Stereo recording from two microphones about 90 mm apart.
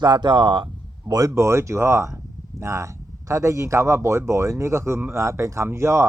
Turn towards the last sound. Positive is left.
turn(degrees=-30)  # may be behind; listen again after turning